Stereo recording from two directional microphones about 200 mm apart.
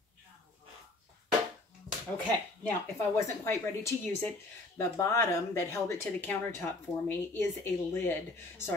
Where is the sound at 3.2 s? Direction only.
15° left (ahead or behind).